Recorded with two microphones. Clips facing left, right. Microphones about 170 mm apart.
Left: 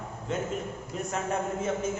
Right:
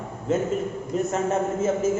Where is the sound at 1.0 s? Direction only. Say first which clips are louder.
Right 7 dB; centre (ahead or behind).